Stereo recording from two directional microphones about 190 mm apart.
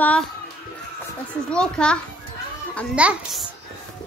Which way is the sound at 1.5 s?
5° left (ahead or behind).